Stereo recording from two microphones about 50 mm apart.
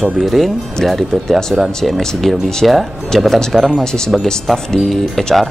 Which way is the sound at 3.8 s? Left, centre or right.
Centre.